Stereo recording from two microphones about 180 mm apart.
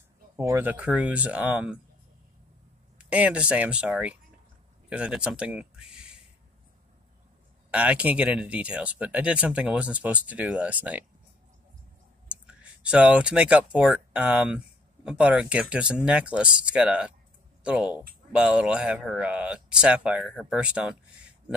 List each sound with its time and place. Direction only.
0.4 s speech: 15° right (ahead or behind)
3.0 s speech: 5° right (ahead or behind)
7.7 s speech: 5° right (ahead or behind)
12.3 s speech: 5° right (ahead or behind)